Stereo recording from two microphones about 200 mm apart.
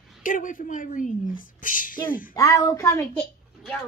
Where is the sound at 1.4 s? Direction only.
45° left (ahead or behind).